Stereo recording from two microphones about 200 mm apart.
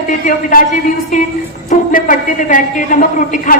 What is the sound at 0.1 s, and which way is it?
A woman's voice, 40° left (ahead or behind).